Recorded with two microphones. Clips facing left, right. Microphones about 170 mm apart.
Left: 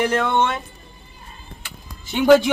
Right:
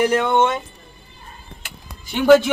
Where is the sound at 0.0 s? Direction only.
10° right (ahead or behind).